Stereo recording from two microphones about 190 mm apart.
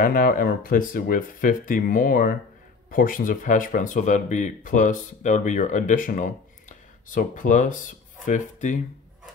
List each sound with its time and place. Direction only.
0.0 s speech: 45° left (ahead or behind)